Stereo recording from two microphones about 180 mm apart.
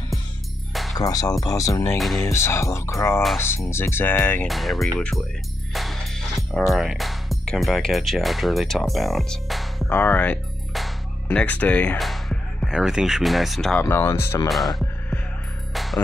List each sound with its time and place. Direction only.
0.9 s speech: 20° left (ahead or behind)
2.0 s speech: centre (ahead or behind)
2.2 s speech: 15° left (ahead or behind)
4.5 s speech: centre (ahead or behind)
9.8 s speech: 10° left (ahead or behind)
13.8 s speech: 15° left (ahead or behind)
14.5 s speech: centre (ahead or behind)
15.7 s music: centre (ahead or behind)